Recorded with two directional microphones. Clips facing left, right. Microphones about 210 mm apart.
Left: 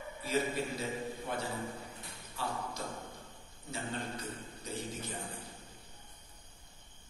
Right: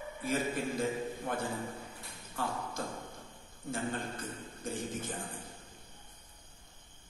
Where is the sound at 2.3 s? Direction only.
50° right (ahead or behind).